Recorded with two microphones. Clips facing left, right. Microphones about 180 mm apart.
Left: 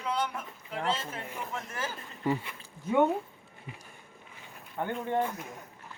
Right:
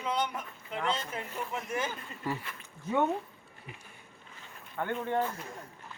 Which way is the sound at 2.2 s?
20° left (ahead or behind).